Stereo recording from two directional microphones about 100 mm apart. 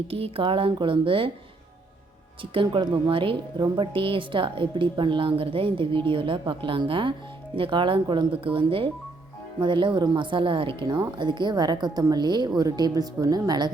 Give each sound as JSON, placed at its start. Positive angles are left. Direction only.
{"t": 0.1, "sound": "a woman's voice", "side_deg": -70}
{"t": 2.4, "sound": "a woman's voice", "side_deg": -60}
{"t": 8.3, "sound": "a woman's voice", "side_deg": -65}
{"t": 10.8, "sound": "a woman's voice", "side_deg": -45}